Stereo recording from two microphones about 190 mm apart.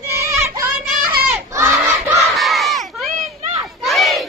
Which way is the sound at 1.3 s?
15° right (ahead or behind).